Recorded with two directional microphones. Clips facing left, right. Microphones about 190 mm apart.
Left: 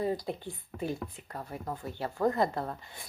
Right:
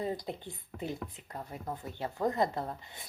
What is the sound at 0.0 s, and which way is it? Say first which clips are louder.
A woman's voice: left 4 dB; 20° right (ahead or behind).